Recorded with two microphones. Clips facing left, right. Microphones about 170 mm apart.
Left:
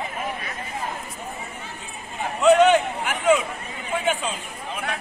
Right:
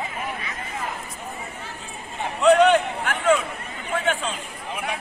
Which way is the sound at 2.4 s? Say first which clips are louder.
Even; 5° left (ahead or behind).